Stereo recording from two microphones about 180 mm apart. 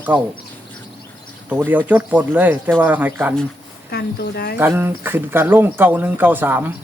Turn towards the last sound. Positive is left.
turn(degrees=-10)  # may be behind; listen again after turning